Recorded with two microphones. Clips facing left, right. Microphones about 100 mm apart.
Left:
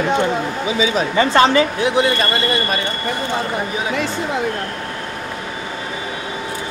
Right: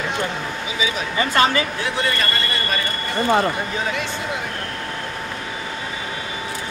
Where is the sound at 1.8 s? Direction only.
20° left (ahead or behind).